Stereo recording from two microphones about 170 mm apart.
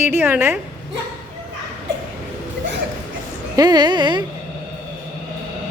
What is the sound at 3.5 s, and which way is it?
Speech, 25° right (ahead or behind).